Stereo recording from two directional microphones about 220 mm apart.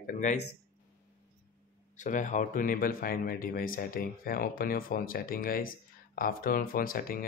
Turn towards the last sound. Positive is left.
turn(degrees=40)  # may be behind; listen again after turning